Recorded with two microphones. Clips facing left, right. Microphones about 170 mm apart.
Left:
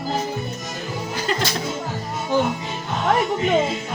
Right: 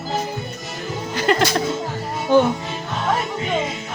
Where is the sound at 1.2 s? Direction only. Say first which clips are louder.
Right 7 dB; 70° right (ahead or behind).